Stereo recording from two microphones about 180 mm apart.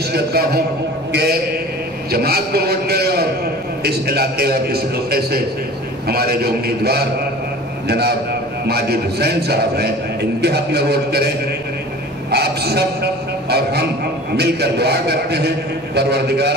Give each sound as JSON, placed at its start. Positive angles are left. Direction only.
{"t": 0.1, "sound": "a man's voice", "side_deg": -60}
{"t": 12.3, "sound": "a sound", "side_deg": -65}
{"t": 14.3, "sound": "a man's voice", "side_deg": -65}